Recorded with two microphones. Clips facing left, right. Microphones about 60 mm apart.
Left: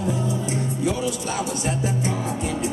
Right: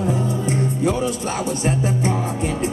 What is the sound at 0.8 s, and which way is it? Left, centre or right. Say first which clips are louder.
Music: right 2 dB; right.